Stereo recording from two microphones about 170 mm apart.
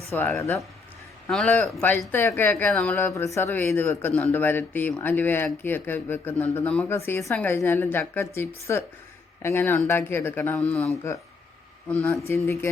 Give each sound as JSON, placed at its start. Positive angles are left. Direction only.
{"t": 0.1, "sound": "speech", "side_deg": 15}
{"t": 3.2, "sound": "speech", "side_deg": 15}